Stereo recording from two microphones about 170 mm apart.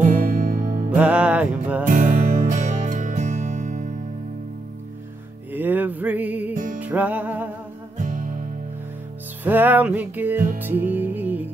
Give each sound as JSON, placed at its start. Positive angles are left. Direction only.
{"t": 0.0, "sound": "music", "side_deg": -50}
{"t": 0.9, "sound": "music", "side_deg": -10}
{"t": 1.9, "sound": "music", "side_deg": -45}
{"t": 5.5, "sound": "music", "side_deg": -10}
{"t": 6.5, "sound": "music", "side_deg": -50}
{"t": 6.8, "sound": "music", "side_deg": -10}
{"t": 8.0, "sound": "music", "side_deg": -50}
{"t": 9.4, "sound": "music", "side_deg": -10}